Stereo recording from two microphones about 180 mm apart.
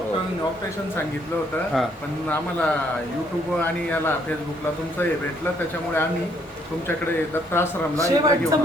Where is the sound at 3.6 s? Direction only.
10° left (ahead or behind).